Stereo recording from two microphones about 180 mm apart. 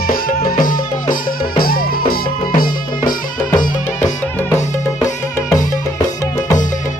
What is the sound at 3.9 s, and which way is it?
Music, 15° left (ahead or behind).